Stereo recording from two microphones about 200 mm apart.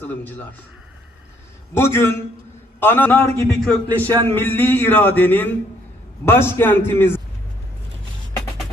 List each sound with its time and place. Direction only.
0.0 s speech: 10° left (ahead or behind)
1.7 s speech: 10° left (ahead or behind)
3.9 s a man's voice: 20° right (ahead or behind)
4.3 s speech: 10° left (ahead or behind)